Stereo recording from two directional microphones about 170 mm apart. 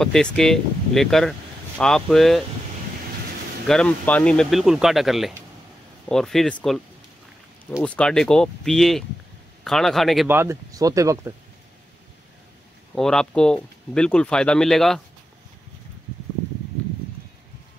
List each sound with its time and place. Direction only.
0.0 s speech: 5° left (ahead or behind)
3.6 s speech: 5° left (ahead or behind)
7.8 s speech: 5° left (ahead or behind)
10.2 s speech: 15° right (ahead or behind)
12.9 s speech: 5° left (ahead or behind)